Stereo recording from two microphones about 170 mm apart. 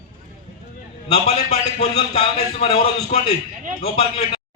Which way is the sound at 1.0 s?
35° left (ahead or behind).